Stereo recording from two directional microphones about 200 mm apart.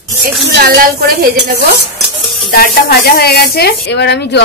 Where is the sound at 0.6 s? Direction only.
50° right (ahead or behind).